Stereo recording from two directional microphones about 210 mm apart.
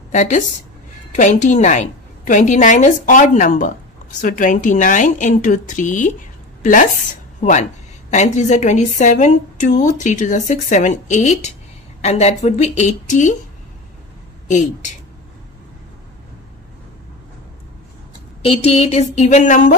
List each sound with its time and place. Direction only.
0.1 s a woman's voice: 35° left (ahead or behind)
14.5 s a woman's voice: 35° left (ahead or behind)
18.4 s a woman's voice: 30° left (ahead or behind)